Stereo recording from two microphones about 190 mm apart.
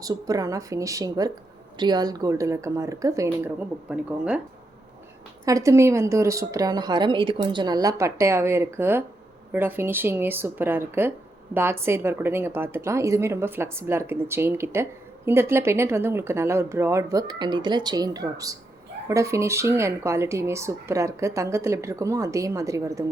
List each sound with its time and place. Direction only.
0.0 s a woman's voice: 20° right (ahead or behind)
5.5 s a woman's voice: 15° right (ahead or behind)